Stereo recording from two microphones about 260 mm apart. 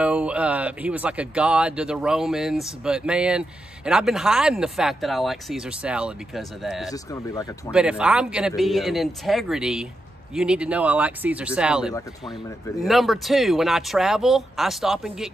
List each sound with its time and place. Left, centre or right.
0.0 s speech: centre
6.9 s speech: centre
7.7 s speech: centre